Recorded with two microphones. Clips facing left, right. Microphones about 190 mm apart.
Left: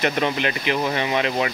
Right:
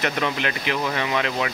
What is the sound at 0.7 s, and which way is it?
Speech, 25° left (ahead or behind).